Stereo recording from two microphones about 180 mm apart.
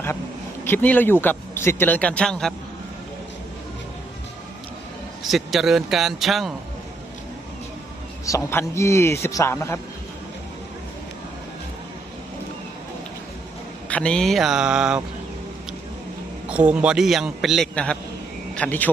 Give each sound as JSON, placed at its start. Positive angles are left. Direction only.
{"t": 0.6, "sound": "speech", "side_deg": 10}
{"t": 5.2, "sound": "a man's voice", "side_deg": 0}
{"t": 8.3, "sound": "speech", "side_deg": 15}
{"t": 13.9, "sound": "a man's voice", "side_deg": 5}
{"t": 16.5, "sound": "a man's voice", "side_deg": -5}